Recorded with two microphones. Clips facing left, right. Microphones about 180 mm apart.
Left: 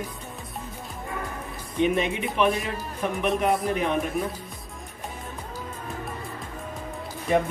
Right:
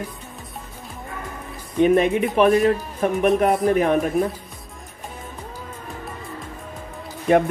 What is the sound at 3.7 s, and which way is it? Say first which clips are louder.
Speech: right 7 dB; 50° right (ahead or behind).